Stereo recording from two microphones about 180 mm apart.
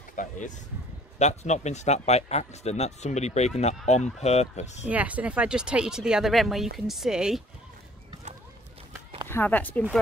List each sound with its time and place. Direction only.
0.1 s speech: 45° left (ahead or behind)
4.8 s speech: 10° right (ahead or behind)
9.3 s speech: 10° left (ahead or behind)